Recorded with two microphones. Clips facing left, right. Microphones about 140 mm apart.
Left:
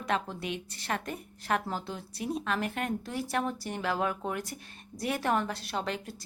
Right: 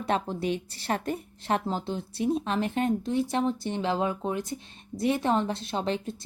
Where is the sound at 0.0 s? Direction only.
30° right (ahead or behind).